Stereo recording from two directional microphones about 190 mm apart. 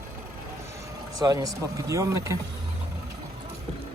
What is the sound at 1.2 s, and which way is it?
Speech, 20° right (ahead or behind).